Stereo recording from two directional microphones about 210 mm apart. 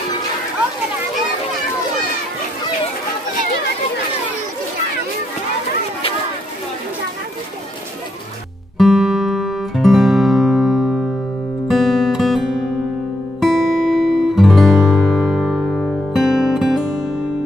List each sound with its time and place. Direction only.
8.7 s music: centre (ahead or behind)